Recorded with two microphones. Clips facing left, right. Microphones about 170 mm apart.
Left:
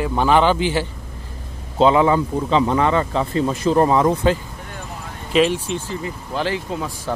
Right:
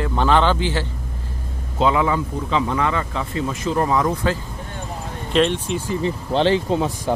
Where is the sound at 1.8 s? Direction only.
30° left (ahead or behind).